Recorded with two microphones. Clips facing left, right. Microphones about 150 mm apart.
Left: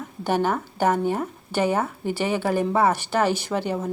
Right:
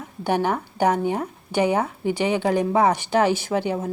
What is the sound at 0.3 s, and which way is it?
Speech, 15° right (ahead or behind).